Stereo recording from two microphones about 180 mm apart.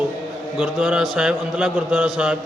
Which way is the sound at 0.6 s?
5° right (ahead or behind).